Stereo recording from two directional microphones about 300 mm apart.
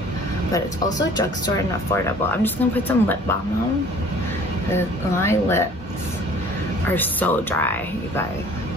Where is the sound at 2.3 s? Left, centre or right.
Centre.